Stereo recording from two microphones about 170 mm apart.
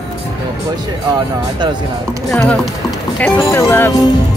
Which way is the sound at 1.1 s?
25° right (ahead or behind).